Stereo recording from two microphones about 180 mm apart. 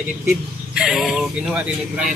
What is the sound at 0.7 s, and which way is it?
Speech, centre (ahead or behind).